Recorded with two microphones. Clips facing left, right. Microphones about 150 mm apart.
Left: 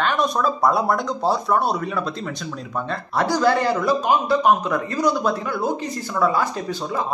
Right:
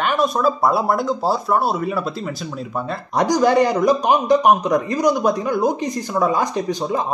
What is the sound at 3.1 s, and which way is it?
Speech, 15° right (ahead or behind).